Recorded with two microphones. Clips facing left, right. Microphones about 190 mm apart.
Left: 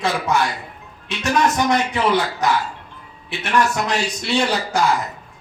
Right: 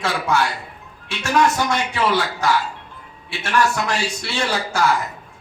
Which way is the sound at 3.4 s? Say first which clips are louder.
Even; 20° left (ahead or behind).